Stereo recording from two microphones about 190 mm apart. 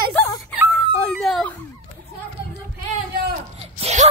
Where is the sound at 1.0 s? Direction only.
Centre (ahead or behind).